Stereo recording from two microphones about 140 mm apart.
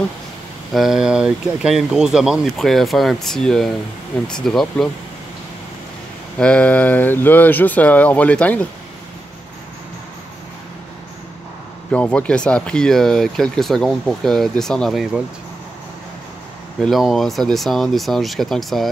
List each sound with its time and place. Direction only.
0.7 s speech: 5° right (ahead or behind)
6.3 s speech: 10° left (ahead or behind)
11.9 s speech: 10° left (ahead or behind)
16.8 s speech: centre (ahead or behind)